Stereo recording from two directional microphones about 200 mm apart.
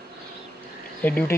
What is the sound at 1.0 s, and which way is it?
Speech, 10° left (ahead or behind).